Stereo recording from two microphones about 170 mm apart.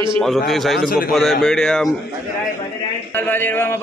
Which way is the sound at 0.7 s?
60° left (ahead or behind).